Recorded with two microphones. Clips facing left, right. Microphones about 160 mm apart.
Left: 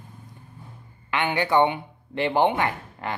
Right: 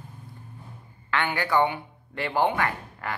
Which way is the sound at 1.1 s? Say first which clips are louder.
Left 3 dB; 20° left (ahead or behind).